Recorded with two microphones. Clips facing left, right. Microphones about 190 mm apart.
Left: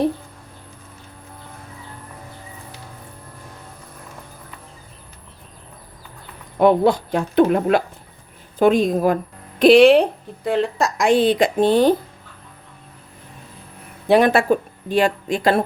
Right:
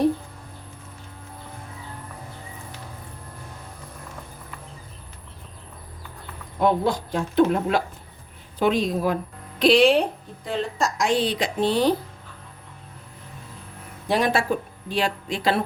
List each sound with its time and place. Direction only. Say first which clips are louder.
6.6 s speech: left 7 dB; 65° left (ahead or behind)
8.5 s speech: left 6 dB; 50° left (ahead or behind)
14.1 s speech: left 7 dB; 60° left (ahead or behind)